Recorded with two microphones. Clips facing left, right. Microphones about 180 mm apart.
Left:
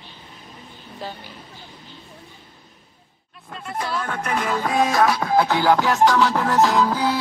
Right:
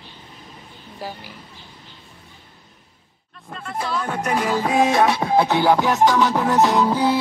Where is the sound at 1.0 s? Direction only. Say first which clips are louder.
Right 1 dB; 10° right (ahead or behind).